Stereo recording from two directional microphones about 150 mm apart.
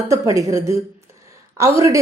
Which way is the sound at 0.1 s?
20° right (ahead or behind).